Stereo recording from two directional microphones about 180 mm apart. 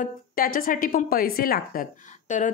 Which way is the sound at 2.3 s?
40° left (ahead or behind).